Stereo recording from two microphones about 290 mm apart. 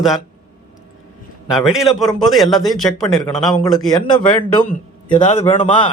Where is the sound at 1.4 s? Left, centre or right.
Centre.